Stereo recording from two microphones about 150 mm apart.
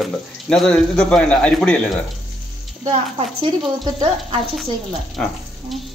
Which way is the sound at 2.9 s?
35° right (ahead or behind).